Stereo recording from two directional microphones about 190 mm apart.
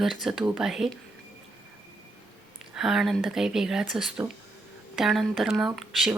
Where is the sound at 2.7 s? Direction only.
Centre (ahead or behind).